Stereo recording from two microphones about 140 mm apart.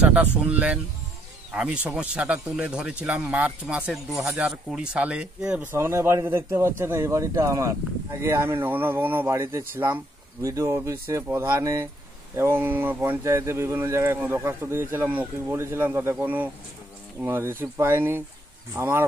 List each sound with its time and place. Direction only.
0.0 s a man's voice: 10° right (ahead or behind)
5.7 s a man's voice: 20° right (ahead or behind)